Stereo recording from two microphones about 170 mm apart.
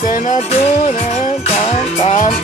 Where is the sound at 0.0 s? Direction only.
50° left (ahead or behind).